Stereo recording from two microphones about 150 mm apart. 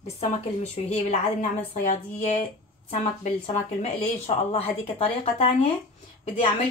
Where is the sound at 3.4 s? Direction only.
45° left (ahead or behind).